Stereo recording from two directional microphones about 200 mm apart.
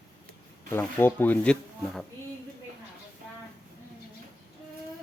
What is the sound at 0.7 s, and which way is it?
Speech, 10° left (ahead or behind).